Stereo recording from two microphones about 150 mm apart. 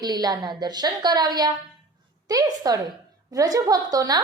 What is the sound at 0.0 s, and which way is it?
A woman's voice, 25° right (ahead or behind).